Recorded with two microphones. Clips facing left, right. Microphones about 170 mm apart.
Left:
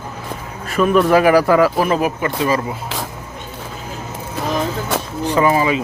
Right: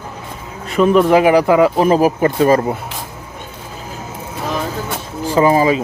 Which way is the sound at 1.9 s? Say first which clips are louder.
Right 5 dB; 35° right (ahead or behind).